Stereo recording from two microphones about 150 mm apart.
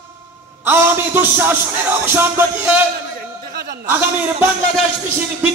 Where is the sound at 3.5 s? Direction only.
80° right.